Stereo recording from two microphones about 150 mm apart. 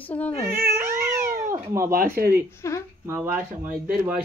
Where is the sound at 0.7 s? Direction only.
15° right (ahead or behind).